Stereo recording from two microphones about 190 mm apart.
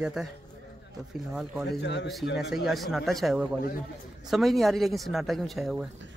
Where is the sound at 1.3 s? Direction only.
Centre (ahead or behind).